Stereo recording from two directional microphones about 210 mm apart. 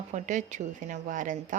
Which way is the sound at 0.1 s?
35° right (ahead or behind).